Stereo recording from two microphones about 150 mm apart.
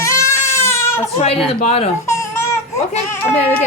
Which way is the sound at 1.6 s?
45° left (ahead or behind).